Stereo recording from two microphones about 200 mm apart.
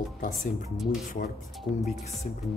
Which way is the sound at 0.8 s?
Centre (ahead or behind).